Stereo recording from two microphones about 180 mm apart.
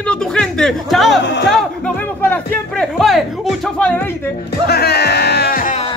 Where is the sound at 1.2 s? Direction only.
80° left.